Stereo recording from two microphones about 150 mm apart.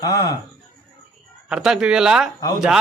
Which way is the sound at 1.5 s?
5° right (ahead or behind).